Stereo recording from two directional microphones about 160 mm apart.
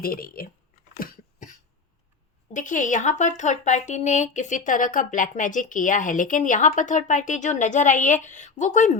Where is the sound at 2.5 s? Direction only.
50° left (ahead or behind).